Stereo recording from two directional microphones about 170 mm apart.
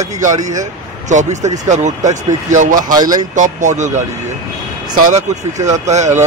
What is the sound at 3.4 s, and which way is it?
Speech, 45° right (ahead or behind).